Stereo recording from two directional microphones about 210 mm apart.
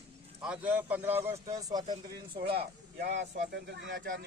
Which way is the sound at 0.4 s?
5° right (ahead or behind).